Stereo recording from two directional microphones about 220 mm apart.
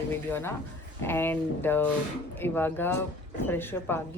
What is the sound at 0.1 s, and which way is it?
Speech, 10° left (ahead or behind).